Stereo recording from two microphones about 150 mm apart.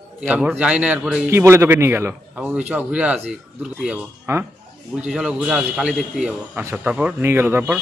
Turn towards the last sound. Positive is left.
turn(degrees=-10)  # may be behind; listen again after turning